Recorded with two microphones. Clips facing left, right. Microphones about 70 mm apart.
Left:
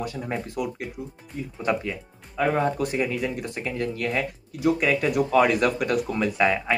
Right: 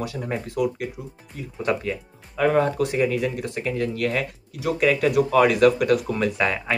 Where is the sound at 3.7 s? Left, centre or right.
Centre.